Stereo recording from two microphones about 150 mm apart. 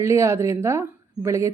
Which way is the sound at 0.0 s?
20° right (ahead or behind).